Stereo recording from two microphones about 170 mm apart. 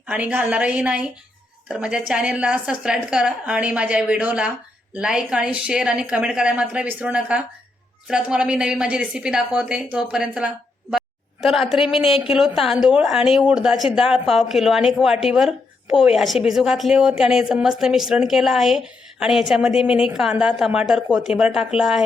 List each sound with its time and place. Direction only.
0.1 s a woman's voice: 10° right (ahead or behind)
10.9 s a sound: centre (ahead or behind)
12.2 s speech: centre (ahead or behind)